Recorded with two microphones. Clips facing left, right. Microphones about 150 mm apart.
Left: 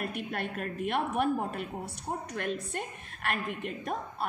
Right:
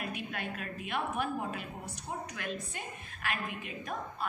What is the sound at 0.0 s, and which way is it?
A woman's voice, 55° left (ahead or behind).